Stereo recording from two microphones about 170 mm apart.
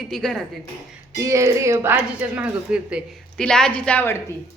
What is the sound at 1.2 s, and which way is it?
Speech, 20° right (ahead or behind).